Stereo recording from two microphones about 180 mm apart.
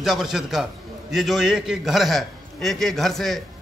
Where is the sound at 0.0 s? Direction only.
Centre (ahead or behind).